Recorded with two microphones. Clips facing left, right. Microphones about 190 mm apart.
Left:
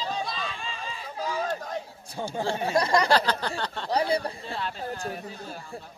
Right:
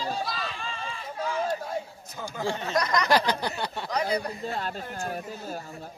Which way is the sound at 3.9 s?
30° left (ahead or behind).